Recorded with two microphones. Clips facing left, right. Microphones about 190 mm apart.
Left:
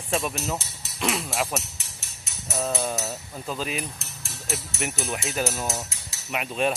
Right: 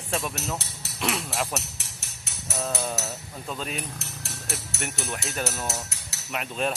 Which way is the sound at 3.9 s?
65° right (ahead or behind).